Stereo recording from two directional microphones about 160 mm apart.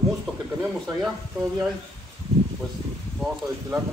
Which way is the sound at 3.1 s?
5° right (ahead or behind).